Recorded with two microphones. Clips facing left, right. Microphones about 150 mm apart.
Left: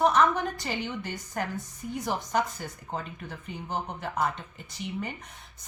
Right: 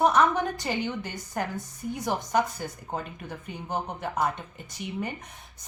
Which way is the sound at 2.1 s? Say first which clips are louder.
Right 3 dB; 15° right (ahead or behind).